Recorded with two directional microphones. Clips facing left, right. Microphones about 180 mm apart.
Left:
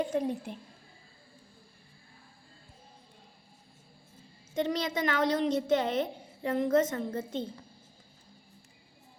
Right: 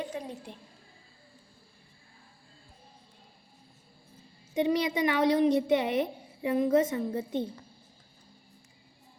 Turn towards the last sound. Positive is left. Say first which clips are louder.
# right 3 dB
turn(degrees=-15)  # may be behind; listen again after turning